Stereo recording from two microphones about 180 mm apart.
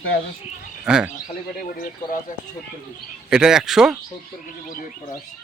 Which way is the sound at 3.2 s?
5° right (ahead or behind).